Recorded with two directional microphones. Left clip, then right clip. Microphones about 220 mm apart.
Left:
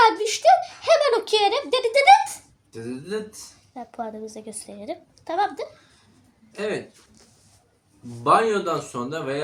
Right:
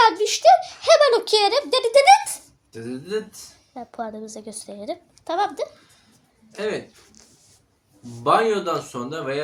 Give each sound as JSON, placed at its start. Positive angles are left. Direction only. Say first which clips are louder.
{"t": 0.0, "sound": "a sound", "louder": "right 2 dB", "side_deg": -10}
{"t": 2.7, "sound": "a woman's voice", "louder": "right 2 dB", "side_deg": -5}
{"t": 8.2, "sound": "speech", "louder": "even", "side_deg": -5}